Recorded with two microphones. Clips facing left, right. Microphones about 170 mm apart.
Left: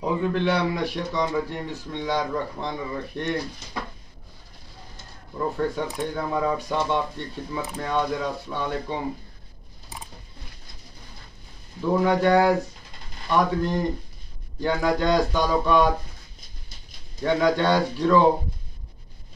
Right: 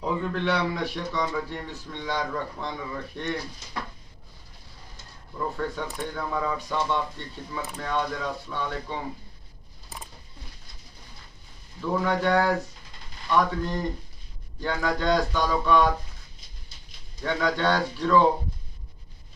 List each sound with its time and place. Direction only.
0.0 s speech: 10° left (ahead or behind)
5.3 s speech: 15° left (ahead or behind)
11.8 s speech: 15° left (ahead or behind)
17.2 s speech: 15° left (ahead or behind)